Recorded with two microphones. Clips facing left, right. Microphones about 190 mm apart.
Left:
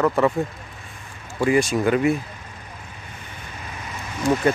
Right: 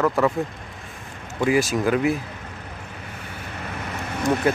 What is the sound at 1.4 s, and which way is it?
Speech, 5° right (ahead or behind).